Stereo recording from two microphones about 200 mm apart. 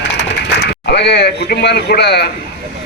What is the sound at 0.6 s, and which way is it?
A man's voice, 55° left (ahead or behind).